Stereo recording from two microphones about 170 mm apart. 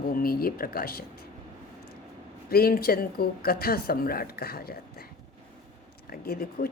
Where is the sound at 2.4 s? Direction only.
60° left (ahead or behind).